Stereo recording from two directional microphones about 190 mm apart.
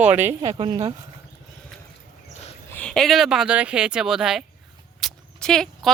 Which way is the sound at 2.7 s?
5° left (ahead or behind).